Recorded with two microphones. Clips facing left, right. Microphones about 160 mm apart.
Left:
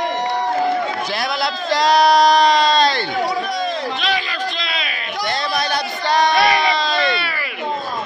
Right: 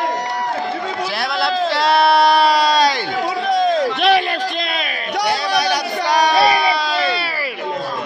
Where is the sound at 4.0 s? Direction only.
65° right (ahead or behind).